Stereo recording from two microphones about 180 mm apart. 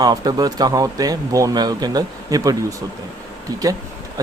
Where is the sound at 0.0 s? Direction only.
20° right (ahead or behind).